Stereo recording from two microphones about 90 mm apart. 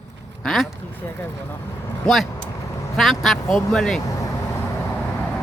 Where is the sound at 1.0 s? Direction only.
25° left (ahead or behind).